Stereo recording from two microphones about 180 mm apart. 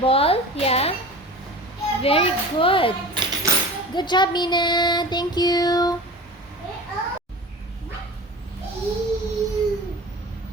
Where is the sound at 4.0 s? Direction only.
25° left (ahead or behind).